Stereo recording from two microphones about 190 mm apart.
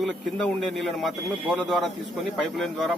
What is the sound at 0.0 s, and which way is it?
Speech, 5° left (ahead or behind).